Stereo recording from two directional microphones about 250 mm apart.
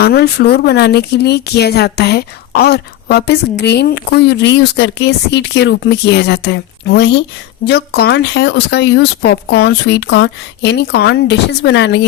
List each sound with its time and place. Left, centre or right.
0.0 s speech: left